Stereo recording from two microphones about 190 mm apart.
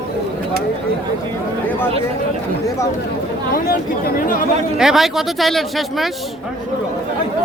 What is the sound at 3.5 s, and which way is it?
Speech, 50° left (ahead or behind).